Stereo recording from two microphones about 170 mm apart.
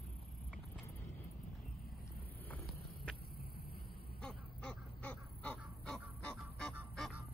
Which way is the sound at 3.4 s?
60° left (ahead or behind).